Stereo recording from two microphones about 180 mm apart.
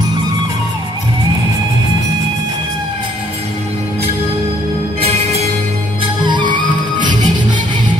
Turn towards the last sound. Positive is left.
turn(degrees=-25)  # may be behind; listen again after turning